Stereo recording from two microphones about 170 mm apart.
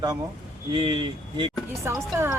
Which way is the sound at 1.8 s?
15° right (ahead or behind).